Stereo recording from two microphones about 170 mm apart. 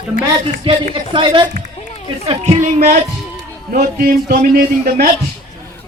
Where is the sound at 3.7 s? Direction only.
55° right (ahead or behind).